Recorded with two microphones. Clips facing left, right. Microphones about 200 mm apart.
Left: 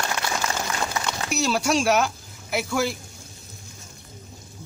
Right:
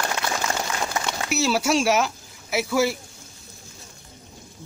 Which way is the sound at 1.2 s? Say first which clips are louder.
Right 1 dB; 5° right (ahead or behind).